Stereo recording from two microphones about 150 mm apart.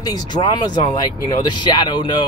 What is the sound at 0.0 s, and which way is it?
Speech, 30° left (ahead or behind).